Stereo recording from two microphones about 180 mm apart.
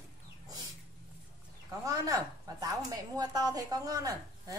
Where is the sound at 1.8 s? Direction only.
20° right (ahead or behind).